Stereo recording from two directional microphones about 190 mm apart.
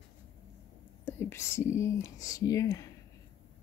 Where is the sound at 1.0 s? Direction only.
15° left (ahead or behind).